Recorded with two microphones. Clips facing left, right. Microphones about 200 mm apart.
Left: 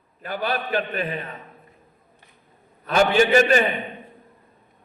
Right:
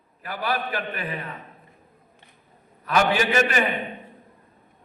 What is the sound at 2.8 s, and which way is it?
Speech, 25° left (ahead or behind).